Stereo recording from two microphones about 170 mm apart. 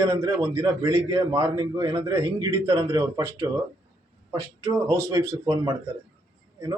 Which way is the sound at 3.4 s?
15° right (ahead or behind).